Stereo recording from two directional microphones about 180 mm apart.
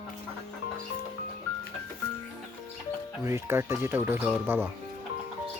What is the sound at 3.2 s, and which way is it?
Speech, 15° right (ahead or behind).